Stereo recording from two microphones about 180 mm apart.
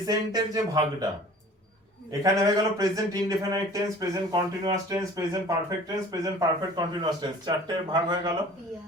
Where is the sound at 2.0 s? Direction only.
20° right (ahead or behind).